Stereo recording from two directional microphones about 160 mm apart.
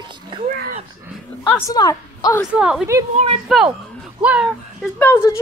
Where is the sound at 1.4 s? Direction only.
10° left (ahead or behind).